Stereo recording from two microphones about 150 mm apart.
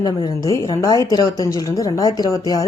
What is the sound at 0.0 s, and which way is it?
Speech, 25° left (ahead or behind).